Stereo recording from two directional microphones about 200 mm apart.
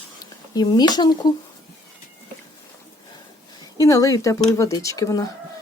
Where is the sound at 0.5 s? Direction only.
20° left (ahead or behind).